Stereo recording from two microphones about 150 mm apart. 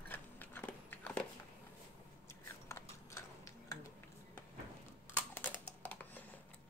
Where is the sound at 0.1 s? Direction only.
10° left (ahead or behind).